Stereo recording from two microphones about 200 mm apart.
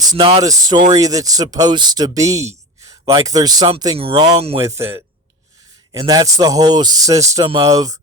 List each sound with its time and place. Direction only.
0.0 s speech: 20° right (ahead or behind)
4.6 s speech: 15° right (ahead or behind)